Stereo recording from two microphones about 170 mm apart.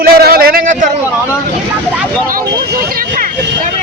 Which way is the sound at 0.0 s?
65° right (ahead or behind).